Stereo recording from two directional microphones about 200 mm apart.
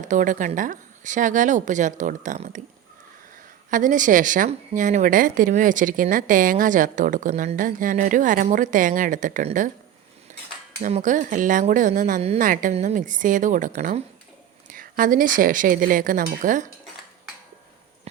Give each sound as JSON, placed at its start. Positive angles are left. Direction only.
{"t": 0.1, "sound": "speech", "side_deg": -40}
{"t": 3.7, "sound": "speech", "side_deg": -40}
{"t": 10.8, "sound": "a woman's voice", "side_deg": -40}